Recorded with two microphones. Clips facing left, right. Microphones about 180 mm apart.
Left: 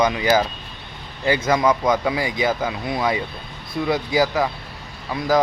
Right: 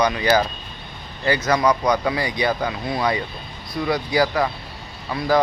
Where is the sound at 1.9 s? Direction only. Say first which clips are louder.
Even; 5° left (ahead or behind).